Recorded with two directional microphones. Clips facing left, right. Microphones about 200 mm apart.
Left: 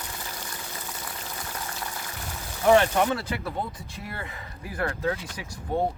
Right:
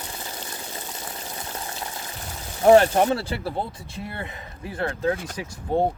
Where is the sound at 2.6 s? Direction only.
35° right (ahead or behind).